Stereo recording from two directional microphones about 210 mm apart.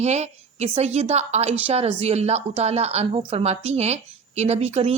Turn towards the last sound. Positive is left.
turn(degrees=-30)  # may be behind; listen again after turning